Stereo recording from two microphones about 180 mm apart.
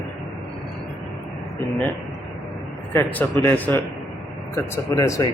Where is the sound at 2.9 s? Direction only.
10° left (ahead or behind).